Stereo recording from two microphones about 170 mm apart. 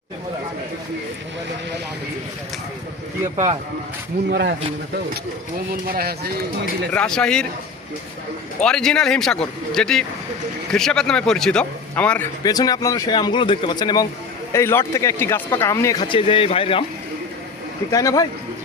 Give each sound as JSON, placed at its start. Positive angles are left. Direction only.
{"t": 3.3, "sound": "speech", "side_deg": -35}
{"t": 4.3, "sound": "speech", "side_deg": -70}
{"t": 5.8, "sound": "speech", "side_deg": -60}
{"t": 6.9, "sound": "a man's voice", "side_deg": 5}
{"t": 8.6, "sound": "a man's voice", "side_deg": 5}
{"t": 12.4, "sound": "speech", "side_deg": 20}
{"t": 17.9, "sound": "speech", "side_deg": 20}